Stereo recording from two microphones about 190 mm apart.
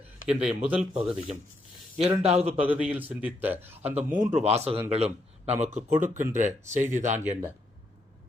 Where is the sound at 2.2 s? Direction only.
35° right (ahead or behind).